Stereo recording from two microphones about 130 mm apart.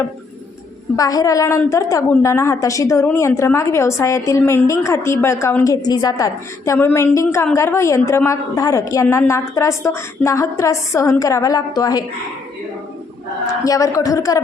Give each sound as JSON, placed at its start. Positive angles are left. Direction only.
{"t": 0.9, "sound": "a woman's voice", "side_deg": 25}
{"t": 13.7, "sound": "a woman's voice", "side_deg": 25}